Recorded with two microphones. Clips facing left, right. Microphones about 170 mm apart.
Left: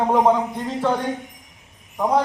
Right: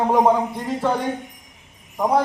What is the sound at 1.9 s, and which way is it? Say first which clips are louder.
Wind chime: even; 10° right (ahead or behind).